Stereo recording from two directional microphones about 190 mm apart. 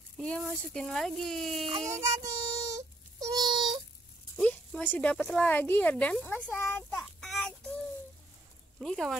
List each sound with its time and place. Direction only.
0.2 s speech: centre (ahead or behind)
1.7 s a sound: 15° right (ahead or behind)
4.4 s speech: 5° left (ahead or behind)
6.5 s child singing: 10° left (ahead or behind)
8.7 s speech: centre (ahead or behind)